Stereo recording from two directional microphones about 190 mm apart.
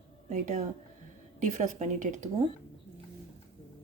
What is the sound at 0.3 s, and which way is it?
Speech, 40° right (ahead or behind).